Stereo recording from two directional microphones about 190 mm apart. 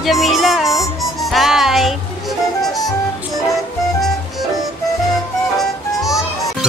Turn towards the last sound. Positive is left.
turn(degrees=0)  # may be behind; listen again after turning